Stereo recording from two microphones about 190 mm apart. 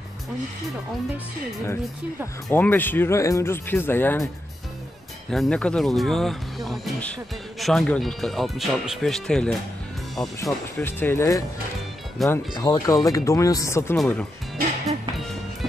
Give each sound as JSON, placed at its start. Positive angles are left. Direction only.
{"t": 2.5, "sound": "speech", "side_deg": 10}
{"t": 5.3, "sound": "speech", "side_deg": 5}